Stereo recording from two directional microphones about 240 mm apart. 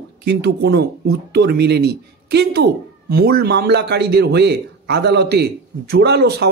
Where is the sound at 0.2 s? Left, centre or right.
Right.